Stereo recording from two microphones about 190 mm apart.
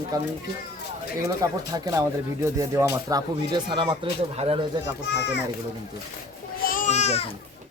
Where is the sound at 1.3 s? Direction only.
20° right (ahead or behind).